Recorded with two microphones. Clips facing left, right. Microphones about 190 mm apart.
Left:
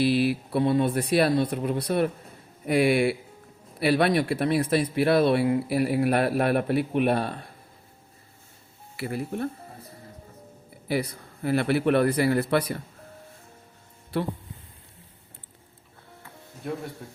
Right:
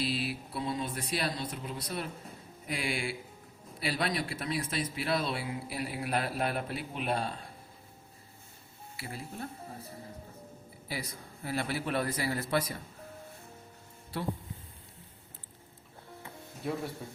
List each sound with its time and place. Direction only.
0.3 s speech: 65° left (ahead or behind)
9.0 s speech: 65° left (ahead or behind)
10.8 s speech: 65° left (ahead or behind)
16.6 s speech: centre (ahead or behind)